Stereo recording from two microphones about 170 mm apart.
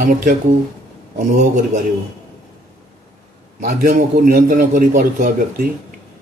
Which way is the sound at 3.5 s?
50° right (ahead or behind).